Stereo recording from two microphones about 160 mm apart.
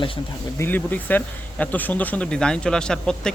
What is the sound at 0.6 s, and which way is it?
Speech, 10° left (ahead or behind).